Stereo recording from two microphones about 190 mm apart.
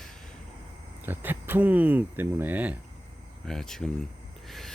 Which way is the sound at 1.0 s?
10° right (ahead or behind).